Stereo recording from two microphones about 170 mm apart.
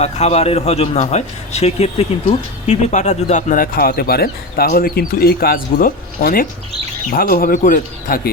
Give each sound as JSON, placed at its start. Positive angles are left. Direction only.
{"t": 0.0, "sound": "a man's voice", "side_deg": 40}